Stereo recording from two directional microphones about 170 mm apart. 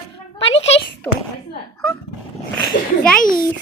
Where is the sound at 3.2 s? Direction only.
55° left (ahead or behind).